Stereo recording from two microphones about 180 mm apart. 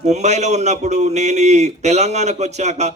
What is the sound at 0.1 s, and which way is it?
A man's voice, 40° right (ahead or behind).